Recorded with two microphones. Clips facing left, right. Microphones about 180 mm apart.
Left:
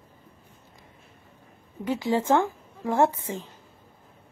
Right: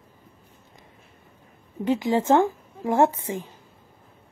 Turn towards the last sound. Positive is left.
turn(degrees=-15)  # may be behind; listen again after turning